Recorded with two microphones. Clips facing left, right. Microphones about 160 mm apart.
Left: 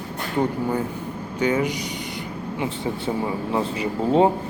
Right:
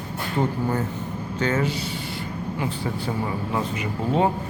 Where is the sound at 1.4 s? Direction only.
15° left (ahead or behind).